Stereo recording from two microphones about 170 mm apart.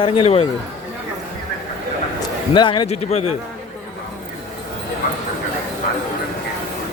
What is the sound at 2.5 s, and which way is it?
Speech, 30° left (ahead or behind).